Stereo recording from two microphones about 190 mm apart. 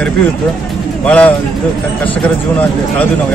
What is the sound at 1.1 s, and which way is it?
Speech, 5° left (ahead or behind).